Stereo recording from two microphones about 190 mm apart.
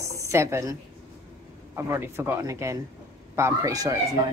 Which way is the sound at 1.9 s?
10° right (ahead or behind).